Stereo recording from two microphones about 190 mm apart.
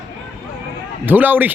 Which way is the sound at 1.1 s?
10° right (ahead or behind).